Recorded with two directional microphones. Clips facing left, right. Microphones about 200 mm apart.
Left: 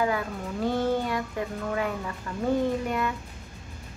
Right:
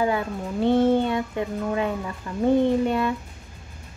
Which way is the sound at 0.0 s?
25° right (ahead or behind).